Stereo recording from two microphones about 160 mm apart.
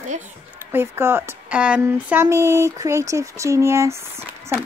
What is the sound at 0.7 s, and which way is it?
Speech, 15° right (ahead or behind).